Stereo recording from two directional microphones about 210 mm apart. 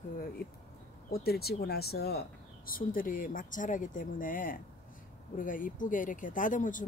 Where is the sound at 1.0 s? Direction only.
45° left (ahead or behind).